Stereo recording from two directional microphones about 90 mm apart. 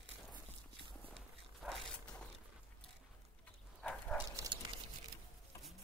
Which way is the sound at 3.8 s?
10° left (ahead or behind).